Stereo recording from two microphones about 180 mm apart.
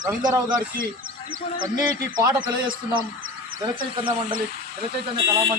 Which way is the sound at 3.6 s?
25° right (ahead or behind).